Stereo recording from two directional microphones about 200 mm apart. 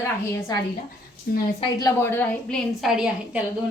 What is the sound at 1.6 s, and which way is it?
A woman's voice, 20° left (ahead or behind).